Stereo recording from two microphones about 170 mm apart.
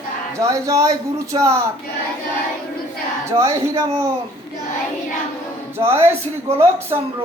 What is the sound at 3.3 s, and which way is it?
Speech, 15° right (ahead or behind).